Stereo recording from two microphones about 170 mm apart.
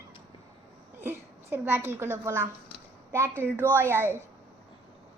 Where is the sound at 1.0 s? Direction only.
15° right (ahead or behind).